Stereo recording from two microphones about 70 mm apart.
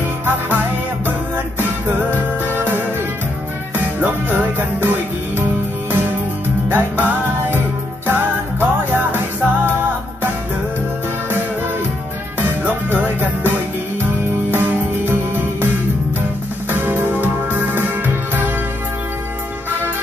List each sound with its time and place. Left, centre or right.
1.6 s music: right
6.7 s music: right
12.4 s music: right
16.7 s music: right